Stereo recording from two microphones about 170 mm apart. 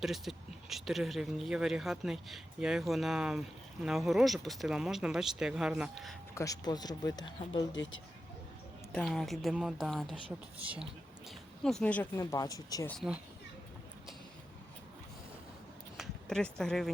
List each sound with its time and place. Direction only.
0.0 s speech: centre (ahead or behind)
6.3 s speech: 20° left (ahead or behind)
8.9 s speech: 5° left (ahead or behind)
11.3 s speech: 5° left (ahead or behind)
12.2 s speech: 20° left (ahead or behind)
12.9 s speech: centre (ahead or behind)
16.0 s speech: 5° left (ahead or behind)